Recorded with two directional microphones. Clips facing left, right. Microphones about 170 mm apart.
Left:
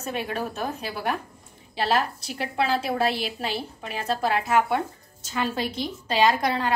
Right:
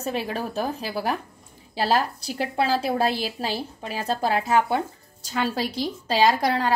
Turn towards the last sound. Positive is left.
turn(degrees=-35)  # may be behind; listen again after turning